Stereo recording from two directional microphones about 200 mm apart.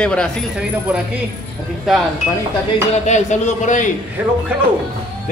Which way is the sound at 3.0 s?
35° left (ahead or behind).